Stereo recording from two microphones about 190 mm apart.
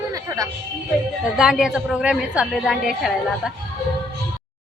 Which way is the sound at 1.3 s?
5° right (ahead or behind).